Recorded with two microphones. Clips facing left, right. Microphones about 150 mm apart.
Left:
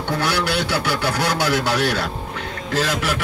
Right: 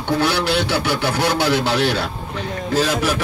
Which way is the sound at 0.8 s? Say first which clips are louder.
Right 2 dB; 25° right (ahead or behind).